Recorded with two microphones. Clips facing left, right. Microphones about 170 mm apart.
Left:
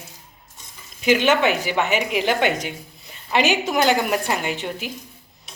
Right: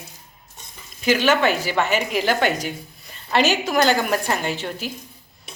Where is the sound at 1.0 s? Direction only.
20° left (ahead or behind).